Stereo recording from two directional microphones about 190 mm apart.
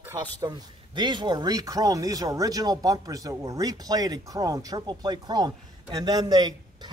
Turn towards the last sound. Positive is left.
turn(degrees=-20)  # may be behind; listen again after turning